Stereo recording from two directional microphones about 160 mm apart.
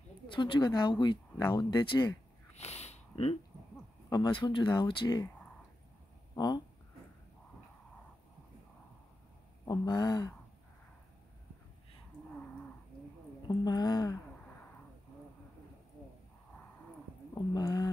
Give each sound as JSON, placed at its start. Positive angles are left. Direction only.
{"t": 0.3, "sound": "speech", "side_deg": 30}
{"t": 2.5, "sound": "a sound", "side_deg": 45}
{"t": 4.1, "sound": "speech", "side_deg": 30}
{"t": 6.3, "sound": "speech", "side_deg": 25}
{"t": 9.7, "sound": "speech", "side_deg": 25}
{"t": 13.5, "sound": "speech", "side_deg": 25}
{"t": 17.6, "sound": "a sound", "side_deg": 25}